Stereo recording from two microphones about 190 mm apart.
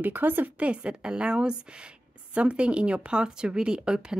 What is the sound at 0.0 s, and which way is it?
Speech, 10° right (ahead or behind).